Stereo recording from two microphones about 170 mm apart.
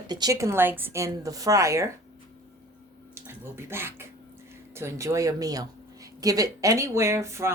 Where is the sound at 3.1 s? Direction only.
15° right (ahead or behind).